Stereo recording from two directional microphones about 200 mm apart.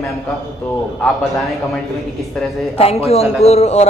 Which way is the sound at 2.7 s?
30° left (ahead or behind).